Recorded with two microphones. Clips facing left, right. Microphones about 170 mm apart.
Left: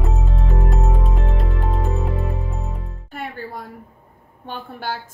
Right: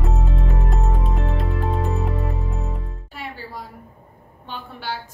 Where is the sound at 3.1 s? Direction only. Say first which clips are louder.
Left 4 dB; 55° left (ahead or behind).